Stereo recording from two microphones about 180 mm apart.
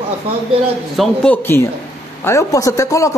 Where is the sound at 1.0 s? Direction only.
10° left (ahead or behind).